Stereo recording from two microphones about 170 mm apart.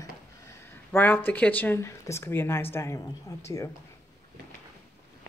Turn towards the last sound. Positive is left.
turn(degrees=15)  # may be behind; listen again after turning